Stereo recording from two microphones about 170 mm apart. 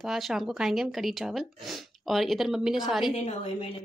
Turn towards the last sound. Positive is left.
turn(degrees=40)  # may be behind; listen again after turning